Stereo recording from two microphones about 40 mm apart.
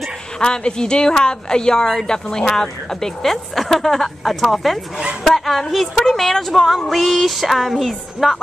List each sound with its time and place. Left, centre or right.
0.4 s a woman's voice: centre